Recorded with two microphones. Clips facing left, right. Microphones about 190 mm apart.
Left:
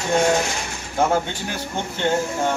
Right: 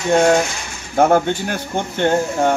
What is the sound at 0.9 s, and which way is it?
Speech, 55° right (ahead or behind).